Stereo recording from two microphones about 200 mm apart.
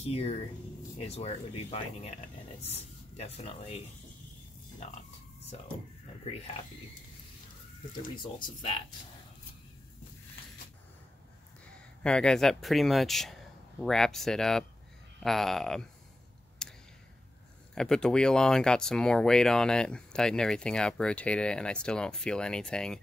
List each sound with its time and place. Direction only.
0.0 s speech: 30° left (ahead or behind)
7.9 s speech: 20° left (ahead or behind)
12.0 s speech: 5° left (ahead or behind)
16.6 s a sound: 5° left (ahead or behind)
17.7 s speech: 5° left (ahead or behind)